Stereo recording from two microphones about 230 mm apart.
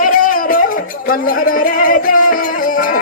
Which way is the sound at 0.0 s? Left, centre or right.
Left.